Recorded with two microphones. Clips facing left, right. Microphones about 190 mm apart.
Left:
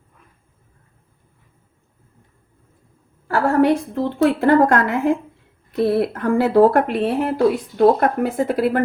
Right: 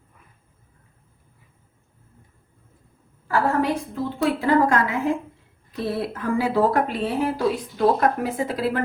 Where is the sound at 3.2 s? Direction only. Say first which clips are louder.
Left 6 dB; 65° left (ahead or behind).